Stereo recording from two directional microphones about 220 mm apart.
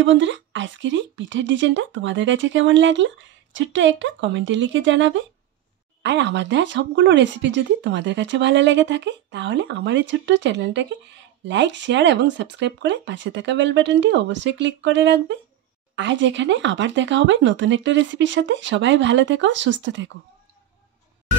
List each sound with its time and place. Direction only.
0.0 s speech: 55° right (ahead or behind)